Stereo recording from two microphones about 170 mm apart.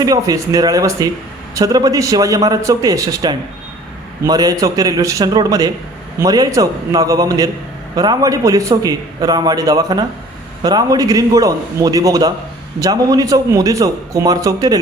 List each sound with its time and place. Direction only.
0.0 s a man's voice: 20° right (ahead or behind)